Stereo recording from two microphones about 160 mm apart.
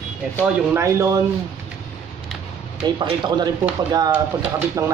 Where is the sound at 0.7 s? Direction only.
20° right (ahead or behind).